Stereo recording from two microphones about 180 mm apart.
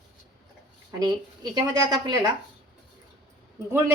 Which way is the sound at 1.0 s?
20° right (ahead or behind).